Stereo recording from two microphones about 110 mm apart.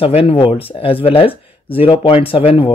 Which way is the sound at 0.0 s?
65° left (ahead or behind).